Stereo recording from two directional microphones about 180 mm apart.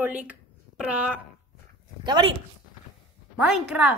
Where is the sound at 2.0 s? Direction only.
25° right (ahead or behind).